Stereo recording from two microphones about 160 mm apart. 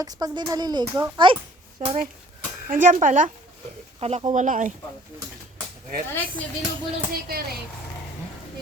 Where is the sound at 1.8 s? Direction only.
50° right (ahead or behind).